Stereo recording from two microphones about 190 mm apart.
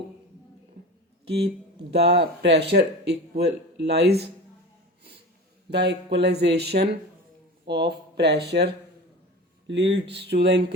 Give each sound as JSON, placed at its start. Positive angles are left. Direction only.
{"t": 1.2, "sound": "speech", "side_deg": -60}
{"t": 5.7, "sound": "speech", "side_deg": -65}
{"t": 9.6, "sound": "speech", "side_deg": -70}